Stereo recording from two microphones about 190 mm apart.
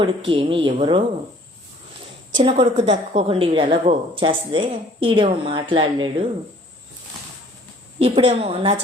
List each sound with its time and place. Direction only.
0.3 s a woman's voice: 30° right (ahead or behind)
2.3 s a woman's voice: 30° right (ahead or behind)
7.9 s a woman's voice: 30° right (ahead or behind)